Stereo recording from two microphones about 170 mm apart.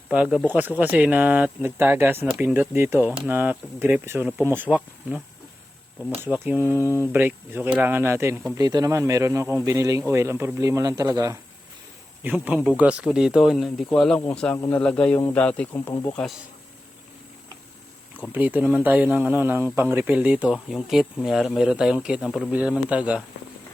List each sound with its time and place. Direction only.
0.1 s speech: 5° right (ahead or behind); by 15.9 s 10° left (ahead or behind)
18.3 s speech: 10° right (ahead or behind)